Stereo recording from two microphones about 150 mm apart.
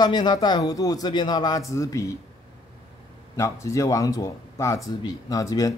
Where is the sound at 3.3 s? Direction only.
20° left (ahead or behind).